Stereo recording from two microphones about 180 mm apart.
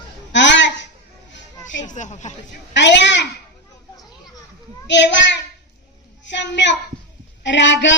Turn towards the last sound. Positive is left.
turn(degrees=85)